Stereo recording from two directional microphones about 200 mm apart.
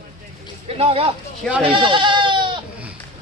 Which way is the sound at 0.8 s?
30° right (ahead or behind).